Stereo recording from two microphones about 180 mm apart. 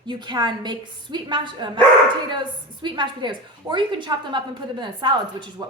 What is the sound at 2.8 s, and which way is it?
A woman's voice, 25° right (ahead or behind).